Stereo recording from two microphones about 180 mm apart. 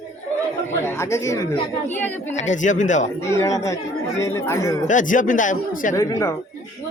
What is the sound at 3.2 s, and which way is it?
Speech, 15° left (ahead or behind).